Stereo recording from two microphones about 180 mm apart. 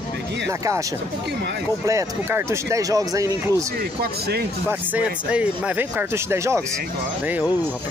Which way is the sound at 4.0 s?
60° right (ahead or behind).